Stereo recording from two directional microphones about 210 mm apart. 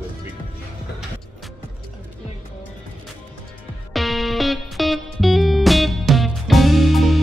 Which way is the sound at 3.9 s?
Centre (ahead or behind).